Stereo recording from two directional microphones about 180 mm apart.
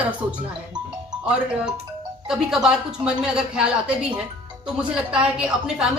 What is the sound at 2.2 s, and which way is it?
Speech, 5° right (ahead or behind).